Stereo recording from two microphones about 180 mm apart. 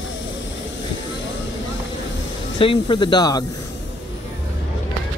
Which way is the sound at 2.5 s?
30° left (ahead or behind).